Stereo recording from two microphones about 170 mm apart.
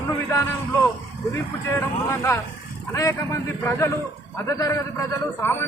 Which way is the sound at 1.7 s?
15° left (ahead or behind).